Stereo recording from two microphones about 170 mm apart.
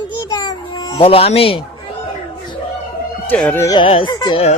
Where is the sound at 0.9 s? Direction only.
35° left (ahead or behind).